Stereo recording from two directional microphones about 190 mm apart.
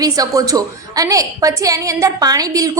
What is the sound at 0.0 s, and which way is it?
A woman's voice, 20° right (ahead or behind).